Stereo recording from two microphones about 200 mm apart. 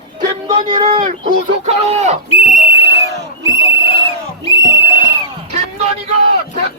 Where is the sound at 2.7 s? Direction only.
55° right (ahead or behind).